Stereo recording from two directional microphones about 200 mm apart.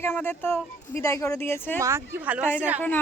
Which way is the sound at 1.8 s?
15° right (ahead or behind).